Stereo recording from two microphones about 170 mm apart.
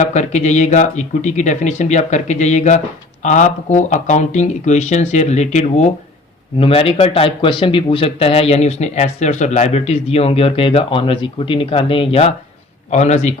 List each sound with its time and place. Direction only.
0.0 s speech: 45° left (ahead or behind)